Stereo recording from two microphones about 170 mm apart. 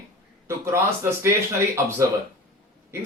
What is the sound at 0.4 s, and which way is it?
A man's voice, 15° right (ahead or behind).